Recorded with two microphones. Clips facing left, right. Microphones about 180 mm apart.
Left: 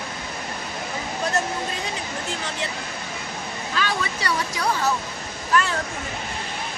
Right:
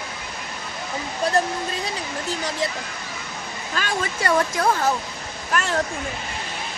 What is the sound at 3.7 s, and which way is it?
Speech, 45° right (ahead or behind).